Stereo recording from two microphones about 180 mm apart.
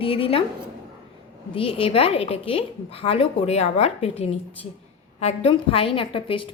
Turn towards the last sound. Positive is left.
turn(degrees=30)  # may be behind; listen again after turning